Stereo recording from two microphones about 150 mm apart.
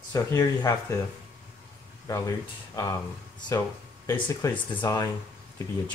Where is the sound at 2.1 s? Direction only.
20° left (ahead or behind).